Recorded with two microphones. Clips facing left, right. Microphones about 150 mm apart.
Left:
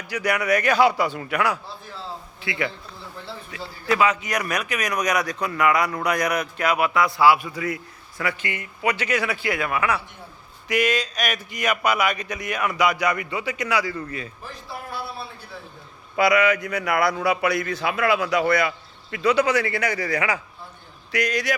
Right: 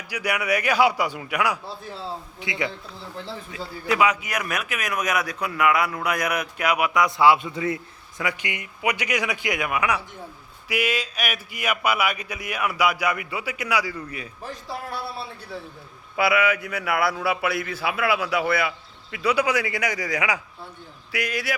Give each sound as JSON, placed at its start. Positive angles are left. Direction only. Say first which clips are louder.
{"t": 0.1, "sound": "speech", "louder": "left 3 dB", "side_deg": -10}
{"t": 8.2, "sound": "speech", "louder": "left 1 dB", "side_deg": -15}
{"t": 16.1, "sound": "speech", "louder": "left 3 dB", "side_deg": -5}